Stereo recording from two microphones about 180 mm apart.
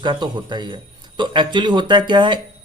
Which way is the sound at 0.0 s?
25° right (ahead or behind).